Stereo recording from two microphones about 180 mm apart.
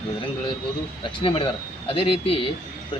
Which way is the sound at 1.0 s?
30° left (ahead or behind).